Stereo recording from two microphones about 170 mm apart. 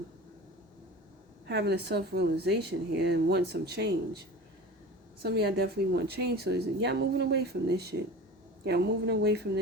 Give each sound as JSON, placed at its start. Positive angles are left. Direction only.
{"t": 1.5, "sound": "speech", "side_deg": -75}
{"t": 5.2, "sound": "speech", "side_deg": -70}